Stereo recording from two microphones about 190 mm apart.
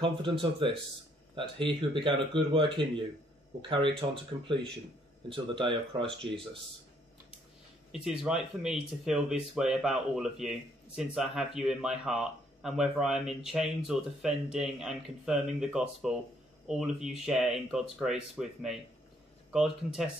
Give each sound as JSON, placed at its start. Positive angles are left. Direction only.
{"t": 0.0, "sound": "speech", "side_deg": -25}
{"t": 7.9, "sound": "speech", "side_deg": -5}